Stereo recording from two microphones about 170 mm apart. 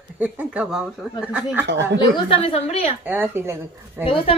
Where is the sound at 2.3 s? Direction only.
35° left (ahead or behind).